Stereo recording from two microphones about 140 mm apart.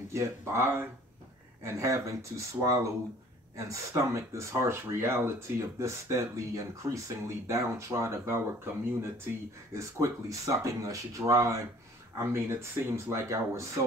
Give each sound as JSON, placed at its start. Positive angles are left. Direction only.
{"t": 0.1, "sound": "speech", "side_deg": -20}
{"t": 9.8, "sound": "speech", "side_deg": -20}